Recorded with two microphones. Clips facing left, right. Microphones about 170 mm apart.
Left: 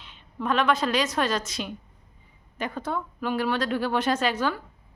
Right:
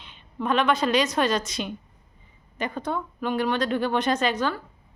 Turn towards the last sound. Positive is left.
turn(degrees=10)  # may be behind; listen again after turning